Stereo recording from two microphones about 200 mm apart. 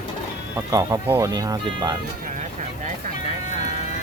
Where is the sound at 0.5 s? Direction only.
15° right (ahead or behind).